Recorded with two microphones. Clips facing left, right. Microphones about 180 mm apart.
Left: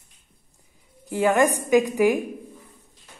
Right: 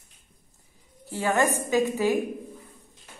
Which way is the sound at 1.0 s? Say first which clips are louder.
Left 5 dB; 15° left (ahead or behind).